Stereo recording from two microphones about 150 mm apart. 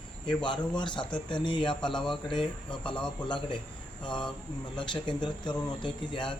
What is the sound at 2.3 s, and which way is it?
Speech, 35° left (ahead or behind).